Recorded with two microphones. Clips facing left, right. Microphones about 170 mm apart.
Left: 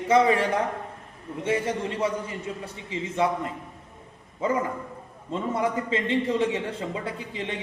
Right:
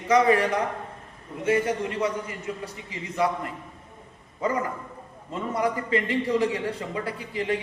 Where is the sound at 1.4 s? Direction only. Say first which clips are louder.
Right 2 dB; 30° left (ahead or behind).